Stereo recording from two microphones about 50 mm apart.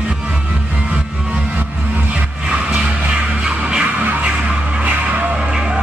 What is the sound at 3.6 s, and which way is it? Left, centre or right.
Skidding, right.